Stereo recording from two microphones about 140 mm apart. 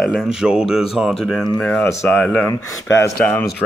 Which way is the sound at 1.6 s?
10° left (ahead or behind).